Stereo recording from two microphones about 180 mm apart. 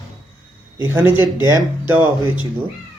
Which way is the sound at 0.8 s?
10° right (ahead or behind).